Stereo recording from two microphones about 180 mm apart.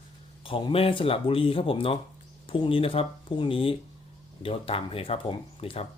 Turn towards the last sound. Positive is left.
turn(degrees=30)  # may be behind; listen again after turning